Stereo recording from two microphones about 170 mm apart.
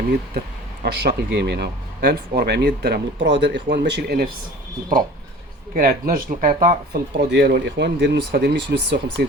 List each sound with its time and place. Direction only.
0.3 s speech: 70° right (ahead or behind)
5.7 s speech: 55° right (ahead or behind)
7.2 s speech: 85° right